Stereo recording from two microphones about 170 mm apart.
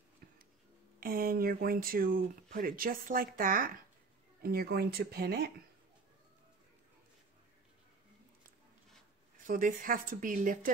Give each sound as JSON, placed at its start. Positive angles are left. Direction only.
{"t": 0.2, "sound": "a sound", "side_deg": -60}
{"t": 0.9, "sound": "speech", "side_deg": -60}
{"t": 9.5, "sound": "speech", "side_deg": -55}